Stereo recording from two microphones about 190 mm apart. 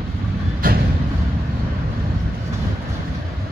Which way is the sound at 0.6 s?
50° right (ahead or behind).